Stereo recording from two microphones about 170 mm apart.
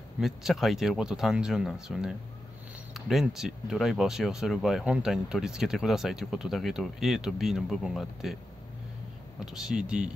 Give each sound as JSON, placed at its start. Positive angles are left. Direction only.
{"t": 0.2, "sound": "speech", "side_deg": 0}
{"t": 9.4, "sound": "speech", "side_deg": -5}